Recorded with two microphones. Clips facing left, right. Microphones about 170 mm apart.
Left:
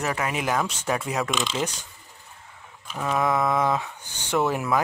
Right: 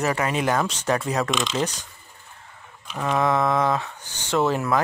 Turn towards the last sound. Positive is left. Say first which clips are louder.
# right 2 dB
turn(degrees=15)  # may be behind; listen again after turning